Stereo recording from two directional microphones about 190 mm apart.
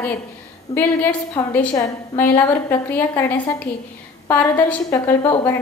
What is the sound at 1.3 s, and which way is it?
A woman's voice, 10° left (ahead or behind).